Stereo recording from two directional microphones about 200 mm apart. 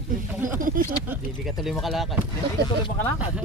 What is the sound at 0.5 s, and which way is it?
Speech, 45° right (ahead or behind).